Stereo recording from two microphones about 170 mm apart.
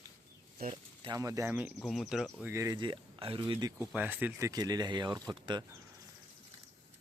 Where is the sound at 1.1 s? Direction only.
20° right (ahead or behind).